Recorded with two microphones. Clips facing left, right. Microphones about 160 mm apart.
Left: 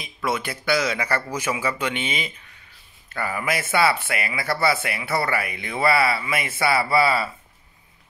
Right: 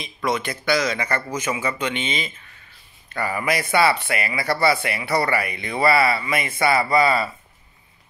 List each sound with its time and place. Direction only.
0.0 s speech: 10° left (ahead or behind)
1.1 s speech: 15° right (ahead or behind)
2.0 s speech: 10° left (ahead or behind)